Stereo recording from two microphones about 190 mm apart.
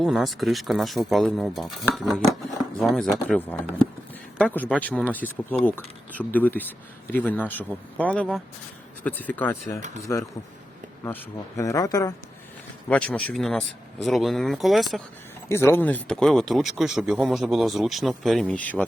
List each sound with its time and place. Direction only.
0.0 s speech: centre (ahead or behind); by 12.1 s 20° left (ahead or behind)
12.9 s speech: 5° left (ahead or behind)
15.4 s speech: 15° left (ahead or behind)